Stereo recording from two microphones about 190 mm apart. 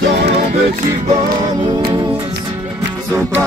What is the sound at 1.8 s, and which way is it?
Music, 20° right (ahead or behind).